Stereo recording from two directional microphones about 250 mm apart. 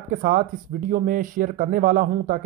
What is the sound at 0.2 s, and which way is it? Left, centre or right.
Speech, right.